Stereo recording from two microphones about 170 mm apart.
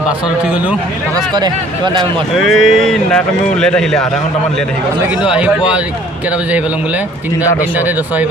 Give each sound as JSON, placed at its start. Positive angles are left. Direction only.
{"t": 1.1, "sound": "speech", "side_deg": -25}
{"t": 2.3, "sound": "speech", "side_deg": 0}